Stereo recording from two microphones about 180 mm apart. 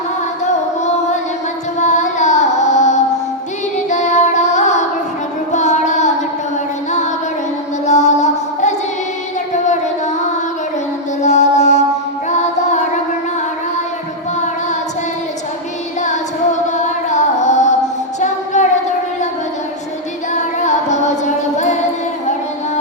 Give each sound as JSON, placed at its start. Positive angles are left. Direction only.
{"t": 1.8, "sound": "carnatic music", "side_deg": 40}
{"t": 3.8, "sound": "child singing", "side_deg": 40}
{"t": 7.9, "sound": "music", "side_deg": 40}
{"t": 11.2, "sound": "mantra", "side_deg": 40}
{"t": 12.3, "sound": "music", "side_deg": 40}
{"t": 16.0, "sound": "music", "side_deg": 40}
{"t": 18.2, "sound": "child singing", "side_deg": 40}
{"t": 20.3, "sound": "music", "side_deg": 40}